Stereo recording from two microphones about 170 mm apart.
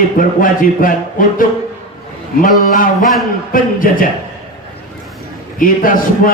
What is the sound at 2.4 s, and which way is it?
Speech, 55° left (ahead or behind).